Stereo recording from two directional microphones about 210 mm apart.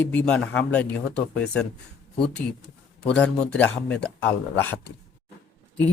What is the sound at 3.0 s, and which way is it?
A man's voice, 5° left (ahead or behind).